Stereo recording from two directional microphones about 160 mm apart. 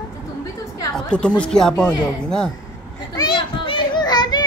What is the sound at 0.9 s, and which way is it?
Speech, 5° left (ahead or behind).